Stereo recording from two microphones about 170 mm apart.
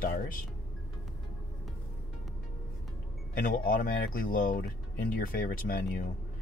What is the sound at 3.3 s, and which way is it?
Speech, 55° left (ahead or behind).